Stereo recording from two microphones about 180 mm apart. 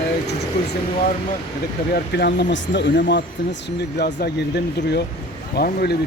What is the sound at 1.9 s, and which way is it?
Speech, 65° left (ahead or behind).